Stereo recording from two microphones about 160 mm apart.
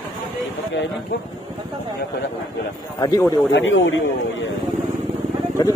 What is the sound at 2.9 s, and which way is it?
Speech, 25° left (ahead or behind).